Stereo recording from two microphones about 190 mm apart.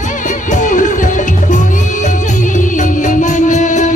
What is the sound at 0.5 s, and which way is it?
Music, 45° left (ahead or behind).